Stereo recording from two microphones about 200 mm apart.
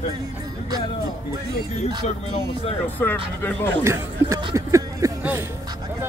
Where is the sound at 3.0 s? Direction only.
10° left (ahead or behind).